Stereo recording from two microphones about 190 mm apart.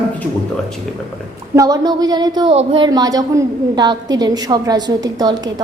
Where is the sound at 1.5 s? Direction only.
20° right (ahead or behind).